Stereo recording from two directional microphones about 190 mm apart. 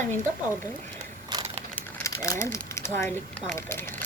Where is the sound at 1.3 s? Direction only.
25° right (ahead or behind).